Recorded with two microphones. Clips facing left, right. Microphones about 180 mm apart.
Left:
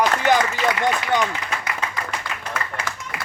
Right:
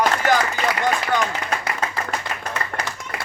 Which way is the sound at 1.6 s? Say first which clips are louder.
Right 2 dB; 40° right (ahead or behind).